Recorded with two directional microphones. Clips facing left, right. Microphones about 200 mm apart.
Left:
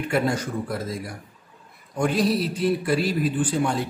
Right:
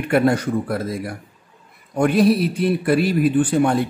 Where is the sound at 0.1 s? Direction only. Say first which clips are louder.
Right 8 dB; 60° right (ahead or behind).